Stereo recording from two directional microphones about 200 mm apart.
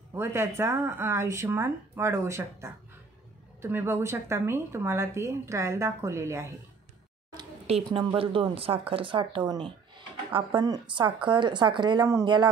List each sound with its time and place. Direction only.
0.1 s speech: 15° right (ahead or behind)
7.6 s speech: 30° right (ahead or behind)